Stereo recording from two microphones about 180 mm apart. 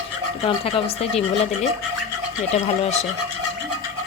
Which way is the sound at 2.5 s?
40° left (ahead or behind).